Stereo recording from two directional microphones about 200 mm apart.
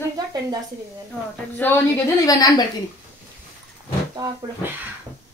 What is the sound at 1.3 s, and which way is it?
A woman's voice, 10° left (ahead or behind).